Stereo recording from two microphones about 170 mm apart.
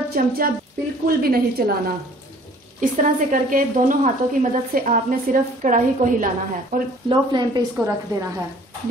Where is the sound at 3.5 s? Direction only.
50° right (ahead or behind).